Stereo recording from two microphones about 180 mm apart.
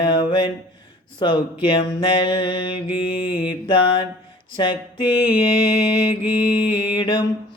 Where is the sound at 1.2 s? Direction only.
25° left (ahead or behind).